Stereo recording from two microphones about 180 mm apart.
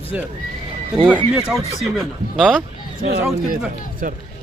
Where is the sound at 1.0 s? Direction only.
5° right (ahead or behind).